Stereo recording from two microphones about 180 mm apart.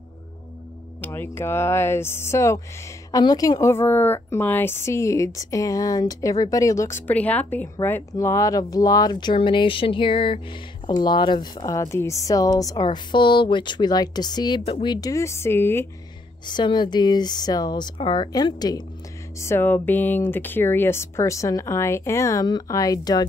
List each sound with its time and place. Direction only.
1.0 s a woman's voice: 10° left (ahead or behind)
16.4 s a woman's voice: 25° left (ahead or behind)